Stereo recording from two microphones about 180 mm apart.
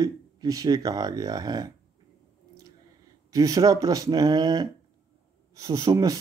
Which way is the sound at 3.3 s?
20° right (ahead or behind).